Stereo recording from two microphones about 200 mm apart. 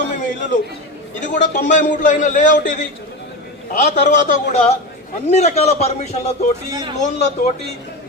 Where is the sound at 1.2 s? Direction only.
40° left (ahead or behind).